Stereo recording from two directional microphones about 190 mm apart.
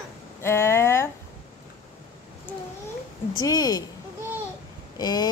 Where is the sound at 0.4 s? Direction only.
15° left (ahead or behind).